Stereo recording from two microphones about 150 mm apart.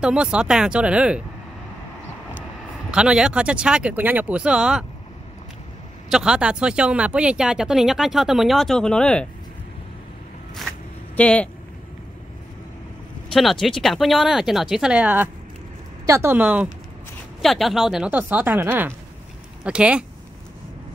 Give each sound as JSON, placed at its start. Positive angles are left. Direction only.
{"t": 0.0, "sound": "speech", "side_deg": -5}
{"t": 2.9, "sound": "speech", "side_deg": -5}
{"t": 6.0, "sound": "speech", "side_deg": -5}
{"t": 11.1, "sound": "speech", "side_deg": 10}
{"t": 13.3, "sound": "speech", "side_deg": 0}